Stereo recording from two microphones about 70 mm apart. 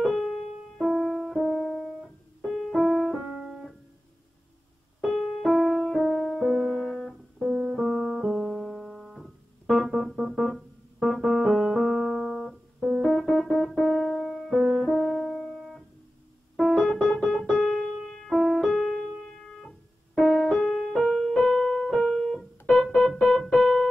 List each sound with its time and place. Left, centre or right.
0.0 s music: centre
2.4 s keyboard: centre
3.2 s keyboard: centre
5.0 s music: centre
6.9 s music: centre
7.7 s piano: centre
11.4 s music: centre
11.8 s music: centre
13.0 s piano: centre
14.9 s music: centre
16.5 s piano: centre
20.2 s keyboard: centre